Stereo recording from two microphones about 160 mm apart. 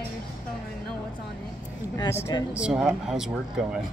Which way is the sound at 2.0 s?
15° left (ahead or behind).